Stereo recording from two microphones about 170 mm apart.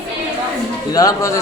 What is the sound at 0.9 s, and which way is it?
Speech, 20° left (ahead or behind).